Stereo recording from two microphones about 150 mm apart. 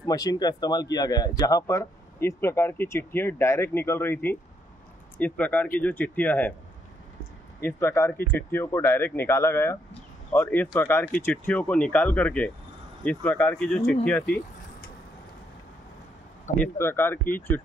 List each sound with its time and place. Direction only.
0.0 s speech: 25° left (ahead or behind)
7.6 s speech: 15° left (ahead or behind)
16.5 s speech: 15° left (ahead or behind)